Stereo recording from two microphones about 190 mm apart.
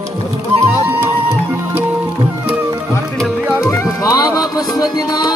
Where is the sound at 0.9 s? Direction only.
10° right (ahead or behind).